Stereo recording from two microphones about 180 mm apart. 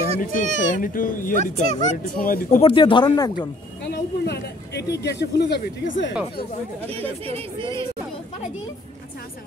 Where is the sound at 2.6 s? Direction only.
30° left (ahead or behind).